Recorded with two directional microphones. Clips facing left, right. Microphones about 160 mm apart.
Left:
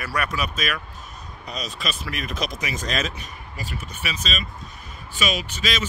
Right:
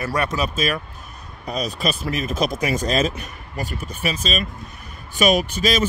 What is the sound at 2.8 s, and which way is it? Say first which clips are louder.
Speech: right 5 dB; 35° right (ahead or behind).